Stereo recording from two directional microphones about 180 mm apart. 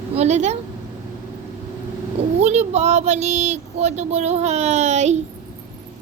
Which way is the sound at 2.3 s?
40° right (ahead or behind).